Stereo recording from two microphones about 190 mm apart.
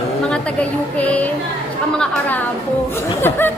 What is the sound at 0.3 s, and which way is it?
A woman's voice, 5° left (ahead or behind).